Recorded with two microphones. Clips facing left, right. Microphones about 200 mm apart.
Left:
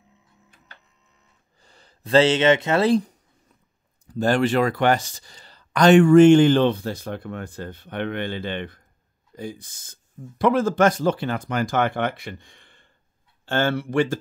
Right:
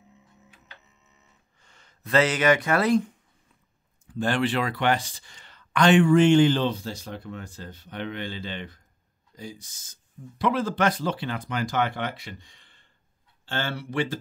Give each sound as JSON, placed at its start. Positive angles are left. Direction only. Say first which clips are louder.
{"t": 1.6, "sound": "speech", "louder": "left 4 dB", "side_deg": 35}
{"t": 10.4, "sound": "speech", "louder": "left 6 dB", "side_deg": 45}